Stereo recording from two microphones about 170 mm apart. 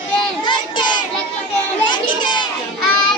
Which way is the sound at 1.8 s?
30° left (ahead or behind).